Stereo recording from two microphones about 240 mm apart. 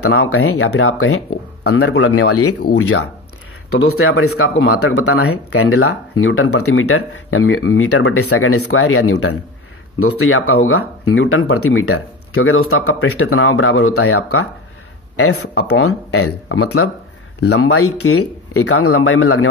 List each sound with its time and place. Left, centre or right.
0.1 s speech: left
16.1 s speech: left
17.4 s speech: left
17.6 s speech: left